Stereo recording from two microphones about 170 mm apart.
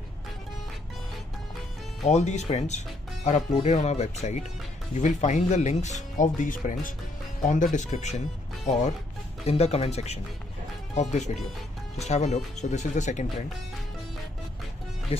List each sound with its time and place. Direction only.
2.0 s speech: 40° left (ahead or behind)
9.5 s speech: 35° left (ahead or behind)